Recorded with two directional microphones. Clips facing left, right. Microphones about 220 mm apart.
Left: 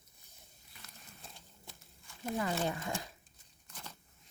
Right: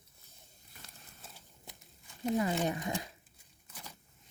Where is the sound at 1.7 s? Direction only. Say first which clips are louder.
Right 2 dB; 20° right (ahead or behind).